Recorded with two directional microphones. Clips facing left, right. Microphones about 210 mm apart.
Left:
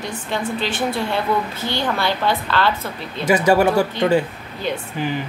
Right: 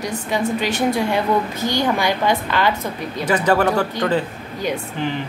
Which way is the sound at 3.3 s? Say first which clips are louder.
Left 2 dB; 10° left (ahead or behind).